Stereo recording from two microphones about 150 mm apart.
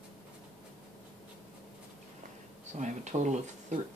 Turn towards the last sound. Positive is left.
turn(degrees=-50)  # may be behind; listen again after turning